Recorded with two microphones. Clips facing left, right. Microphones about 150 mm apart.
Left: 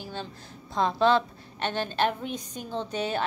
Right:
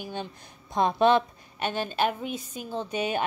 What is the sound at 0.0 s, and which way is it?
A woman's voice, 15° right (ahead or behind).